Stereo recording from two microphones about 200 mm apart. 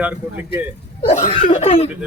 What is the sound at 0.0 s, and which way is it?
Speech, 10° right (ahead or behind).